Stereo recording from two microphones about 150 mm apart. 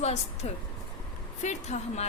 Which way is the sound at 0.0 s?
45° left (ahead or behind).